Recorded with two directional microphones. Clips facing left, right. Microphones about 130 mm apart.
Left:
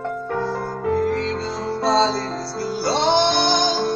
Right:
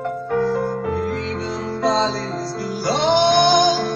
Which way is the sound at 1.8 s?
15° right (ahead or behind).